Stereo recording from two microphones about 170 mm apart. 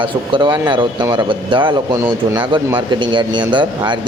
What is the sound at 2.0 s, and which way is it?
Speech, 15° right (ahead or behind).